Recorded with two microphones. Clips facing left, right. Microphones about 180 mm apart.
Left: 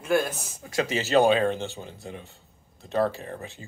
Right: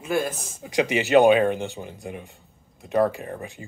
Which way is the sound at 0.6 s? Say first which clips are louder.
Right 4 dB; 15° right (ahead or behind).